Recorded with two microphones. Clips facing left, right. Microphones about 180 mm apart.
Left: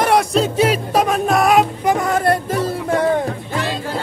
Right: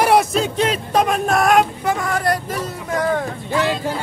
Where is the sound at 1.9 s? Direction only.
20° left (ahead or behind).